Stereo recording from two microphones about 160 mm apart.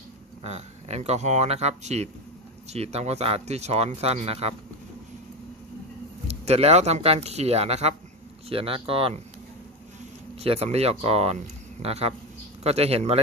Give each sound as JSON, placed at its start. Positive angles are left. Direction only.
{"t": 0.4, "sound": "speech", "side_deg": -40}
{"t": 6.2, "sound": "speech", "side_deg": -40}
{"t": 10.4, "sound": "speech", "side_deg": -40}